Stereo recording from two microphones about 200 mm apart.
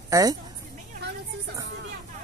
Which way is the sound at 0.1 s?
20° right (ahead or behind).